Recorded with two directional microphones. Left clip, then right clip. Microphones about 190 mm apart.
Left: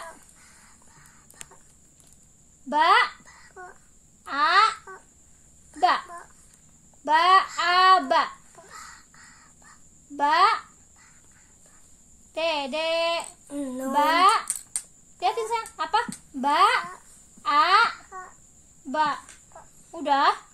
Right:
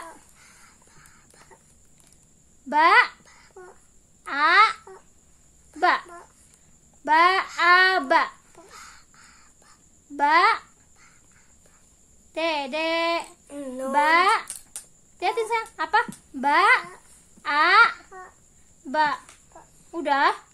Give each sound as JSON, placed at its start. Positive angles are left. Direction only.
{"t": 2.7, "sound": "child singing", "side_deg": -30}
{"t": 4.2, "sound": "a sound", "side_deg": -30}
{"t": 5.8, "sound": "a sound", "side_deg": -30}
{"t": 7.6, "sound": "chicken", "side_deg": -30}
{"t": 10.1, "sound": "a child's voice", "side_deg": -30}
{"t": 12.4, "sound": "child singing", "side_deg": -30}
{"t": 13.5, "sound": "child singing", "side_deg": -10}
{"t": 13.9, "sound": "a sound", "side_deg": -30}
{"t": 19.9, "sound": "child singing", "side_deg": -30}